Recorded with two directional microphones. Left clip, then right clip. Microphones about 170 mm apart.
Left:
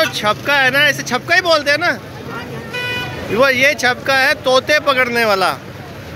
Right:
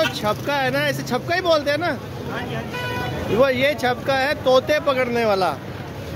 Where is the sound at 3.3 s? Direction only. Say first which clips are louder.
Left 6 dB; 5° right (ahead or behind).